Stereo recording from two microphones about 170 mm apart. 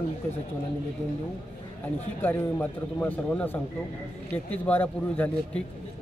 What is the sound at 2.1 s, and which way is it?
A man's voice, 10° left (ahead or behind).